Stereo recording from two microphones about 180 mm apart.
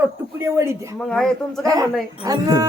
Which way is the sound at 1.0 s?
5° left (ahead or behind).